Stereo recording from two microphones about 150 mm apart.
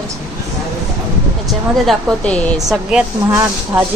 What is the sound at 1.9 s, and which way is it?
Speech, 5° left (ahead or behind).